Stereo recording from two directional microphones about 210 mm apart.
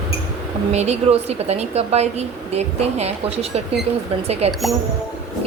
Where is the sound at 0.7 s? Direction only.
30° right (ahead or behind).